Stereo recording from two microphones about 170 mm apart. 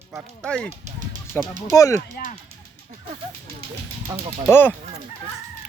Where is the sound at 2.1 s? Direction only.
45° left (ahead or behind).